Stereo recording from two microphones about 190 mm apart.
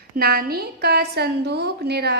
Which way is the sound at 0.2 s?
55° right (ahead or behind).